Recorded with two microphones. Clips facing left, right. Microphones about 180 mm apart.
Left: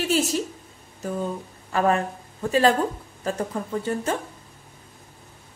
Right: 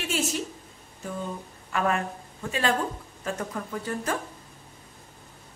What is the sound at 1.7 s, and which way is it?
Speech, 35° left (ahead or behind).